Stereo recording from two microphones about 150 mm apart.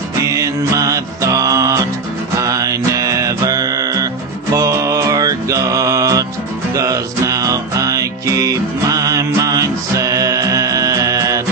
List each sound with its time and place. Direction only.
0.3 s music: 20° right (ahead or behind)